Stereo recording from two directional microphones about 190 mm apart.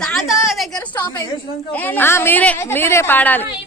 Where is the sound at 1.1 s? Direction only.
20° left (ahead or behind).